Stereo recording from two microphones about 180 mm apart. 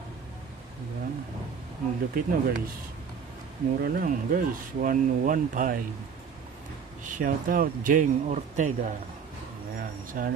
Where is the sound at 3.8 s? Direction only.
50° right (ahead or behind).